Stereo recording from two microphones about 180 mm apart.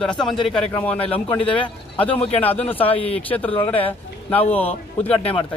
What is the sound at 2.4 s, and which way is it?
Speech, 10° left (ahead or behind).